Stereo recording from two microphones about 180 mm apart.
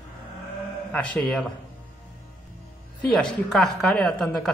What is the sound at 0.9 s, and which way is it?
Speech, 10° left (ahead or behind).